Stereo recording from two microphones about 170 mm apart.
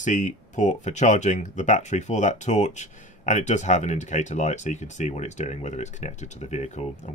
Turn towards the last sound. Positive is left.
turn(degrees=45)  # may be behind; listen again after turning